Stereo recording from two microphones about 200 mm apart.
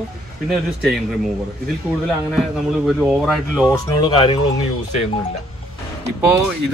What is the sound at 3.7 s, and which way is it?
Speech, 25° left (ahead or behind).